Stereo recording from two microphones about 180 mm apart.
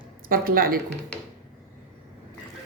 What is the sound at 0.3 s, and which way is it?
Speech, 55° right (ahead or behind).